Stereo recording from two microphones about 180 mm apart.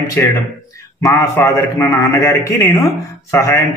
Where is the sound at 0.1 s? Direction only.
15° left (ahead or behind).